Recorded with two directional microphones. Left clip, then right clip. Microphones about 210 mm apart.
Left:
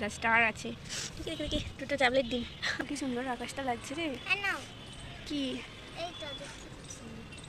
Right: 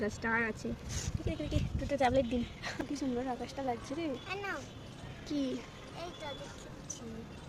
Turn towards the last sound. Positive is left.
turn(degrees=-50)  # may be behind; listen again after turning